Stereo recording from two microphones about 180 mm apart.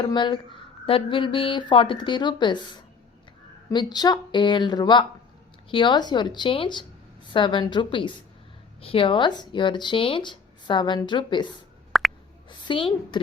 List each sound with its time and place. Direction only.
0.0 s speech: 25° left (ahead or behind)
3.7 s speech: 25° left (ahead or behind)
11.9 s plop: centre (ahead or behind)
12.5 s speech: 25° left (ahead or behind)